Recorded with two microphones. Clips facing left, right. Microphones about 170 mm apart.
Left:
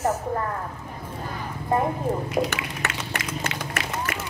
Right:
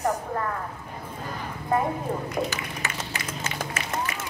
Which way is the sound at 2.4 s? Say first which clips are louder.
Left 3 dB; 70° left (ahead or behind).